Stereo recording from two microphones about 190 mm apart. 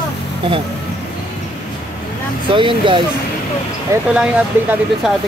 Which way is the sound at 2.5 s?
25° right (ahead or behind).